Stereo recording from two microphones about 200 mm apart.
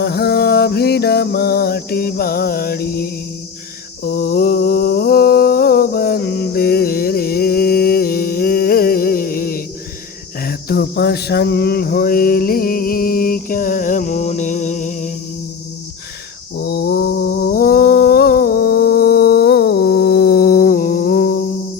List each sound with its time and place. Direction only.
0.0 s mantra: 55° left (ahead or behind)
10.4 s cricket: 50° left (ahead or behind)
16.6 s mantra: 55° left (ahead or behind)